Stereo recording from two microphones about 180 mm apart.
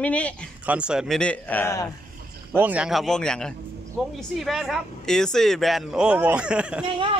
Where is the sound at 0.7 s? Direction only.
5° right (ahead or behind); by 1.9 s 15° left (ahead or behind).